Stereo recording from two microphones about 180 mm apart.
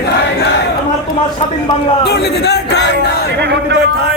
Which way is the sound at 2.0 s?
65° left (ahead or behind).